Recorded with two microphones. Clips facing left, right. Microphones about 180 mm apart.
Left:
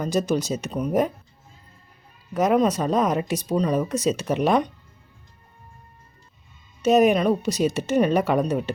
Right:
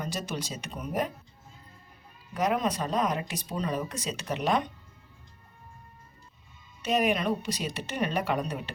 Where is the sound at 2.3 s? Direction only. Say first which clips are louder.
Left 8 dB; 45° left (ahead or behind).